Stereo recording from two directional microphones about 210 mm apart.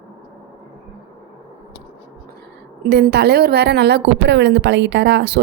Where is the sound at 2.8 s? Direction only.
50° right (ahead or behind).